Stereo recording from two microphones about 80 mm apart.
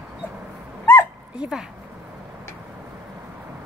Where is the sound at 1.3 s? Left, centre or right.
Centre.